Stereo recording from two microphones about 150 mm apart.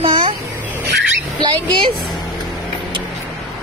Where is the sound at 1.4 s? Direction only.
30° right (ahead or behind).